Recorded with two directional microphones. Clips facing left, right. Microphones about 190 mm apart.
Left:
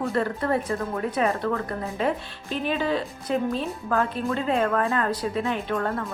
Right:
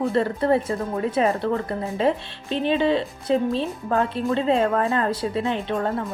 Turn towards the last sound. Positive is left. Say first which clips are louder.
# right 2 dB
turn(degrees=-25)  # may be behind; listen again after turning